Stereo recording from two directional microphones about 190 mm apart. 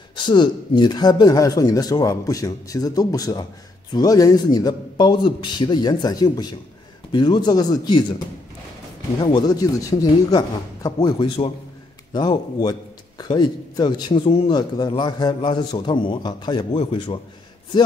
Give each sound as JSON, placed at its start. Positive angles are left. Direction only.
{"t": 0.1, "sound": "a man's voice", "side_deg": 25}
{"t": 9.2, "sound": "a man's voice", "side_deg": 20}